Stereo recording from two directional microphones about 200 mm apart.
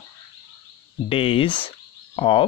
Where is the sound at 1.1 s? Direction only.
25° left (ahead or behind).